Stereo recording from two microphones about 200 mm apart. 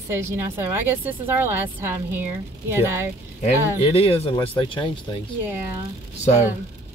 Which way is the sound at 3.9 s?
30° left (ahead or behind).